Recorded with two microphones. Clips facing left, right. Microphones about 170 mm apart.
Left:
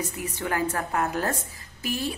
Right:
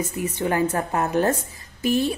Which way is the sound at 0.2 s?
25° right (ahead or behind).